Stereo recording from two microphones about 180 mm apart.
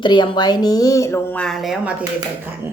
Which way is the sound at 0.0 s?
25° left (ahead or behind).